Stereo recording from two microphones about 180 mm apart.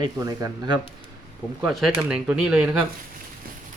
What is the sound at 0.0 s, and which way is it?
Speech, 20° right (ahead or behind).